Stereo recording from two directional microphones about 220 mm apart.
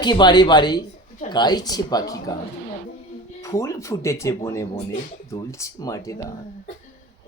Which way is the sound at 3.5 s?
15° left (ahead or behind).